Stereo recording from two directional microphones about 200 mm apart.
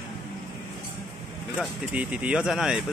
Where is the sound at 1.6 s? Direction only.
5° right (ahead or behind).